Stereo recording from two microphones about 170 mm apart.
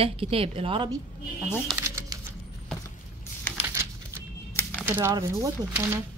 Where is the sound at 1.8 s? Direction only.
15° right (ahead or behind).